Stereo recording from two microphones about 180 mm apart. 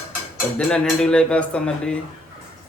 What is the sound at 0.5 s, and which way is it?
Speech, 5° left (ahead or behind).